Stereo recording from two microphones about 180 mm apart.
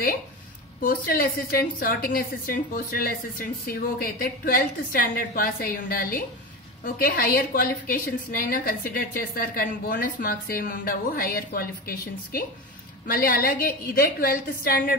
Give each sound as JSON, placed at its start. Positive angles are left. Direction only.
{"t": 0.7, "sound": "a woman's voice", "side_deg": 55}